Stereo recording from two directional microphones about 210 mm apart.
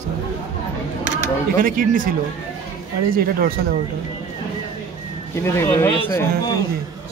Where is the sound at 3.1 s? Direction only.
45° right (ahead or behind).